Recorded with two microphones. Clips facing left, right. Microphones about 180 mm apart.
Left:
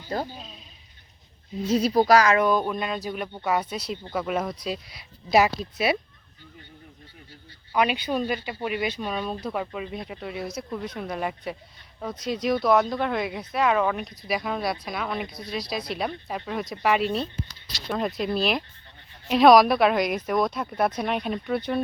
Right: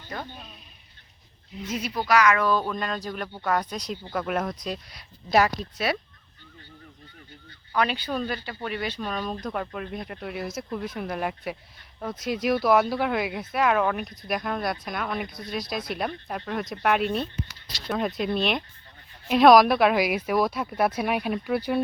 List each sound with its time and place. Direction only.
0.1 s speech: 30° left (ahead or behind)
1.6 s speech: 35° left (ahead or behind); by 6.0 s 10° left (ahead or behind)
7.8 s speech: 10° left (ahead or behind); by 21.8 s 5° right (ahead or behind)